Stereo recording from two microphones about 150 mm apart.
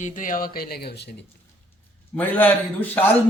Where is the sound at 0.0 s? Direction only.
60° left (ahead or behind); by 1.2 s 90° left.